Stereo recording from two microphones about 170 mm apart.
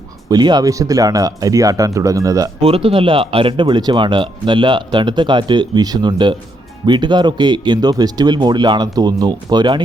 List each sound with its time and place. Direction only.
0.3 s speech: 25° right (ahead or behind)
2.6 s speech: 35° right (ahead or behind)